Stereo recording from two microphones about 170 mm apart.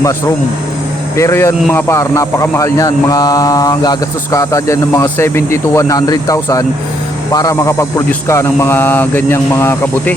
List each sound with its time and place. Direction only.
1.1 s speech: 15° left (ahead or behind)